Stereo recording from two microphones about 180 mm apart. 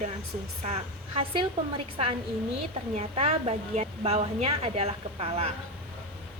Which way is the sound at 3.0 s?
35° right (ahead or behind).